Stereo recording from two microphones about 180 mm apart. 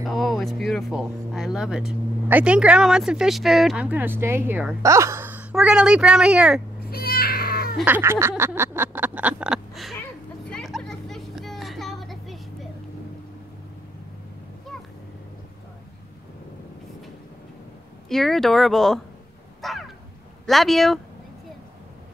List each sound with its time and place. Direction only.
0.0 s speech: centre (ahead or behind)
6.8 s cat: 60° left (ahead or behind)
7.8 s a sound: 10° right (ahead or behind)
10.5 s vehicle: centre (ahead or behind)
18.0 s speech: centre (ahead or behind)
19.6 s a sound: centre (ahead or behind)
20.4 s speech: centre (ahead or behind)